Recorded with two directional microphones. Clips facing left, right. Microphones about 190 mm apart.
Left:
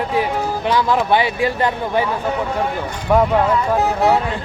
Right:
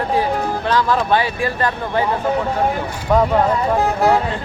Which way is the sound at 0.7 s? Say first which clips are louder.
Left 1 dB; 15° left (ahead or behind).